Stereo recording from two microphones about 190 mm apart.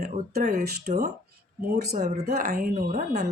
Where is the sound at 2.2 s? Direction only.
55° right (ahead or behind).